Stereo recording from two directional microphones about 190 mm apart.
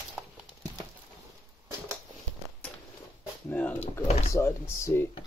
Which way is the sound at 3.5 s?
10° left (ahead or behind).